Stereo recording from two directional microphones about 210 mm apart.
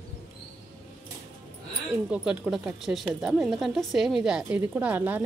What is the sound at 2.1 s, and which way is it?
Speech, 5° right (ahead or behind).